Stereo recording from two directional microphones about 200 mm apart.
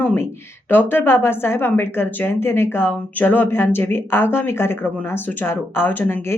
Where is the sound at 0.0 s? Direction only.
10° left (ahead or behind).